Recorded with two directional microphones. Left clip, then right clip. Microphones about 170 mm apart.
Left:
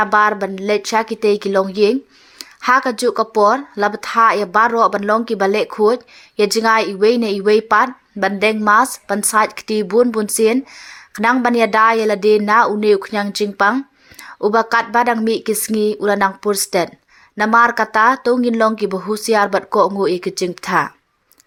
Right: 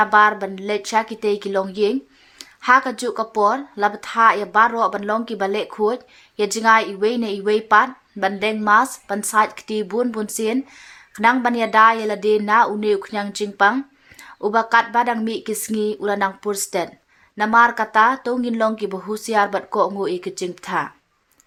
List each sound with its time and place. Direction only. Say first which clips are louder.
0.0 s a woman's voice: left 1 dB; 30° left (ahead or behind)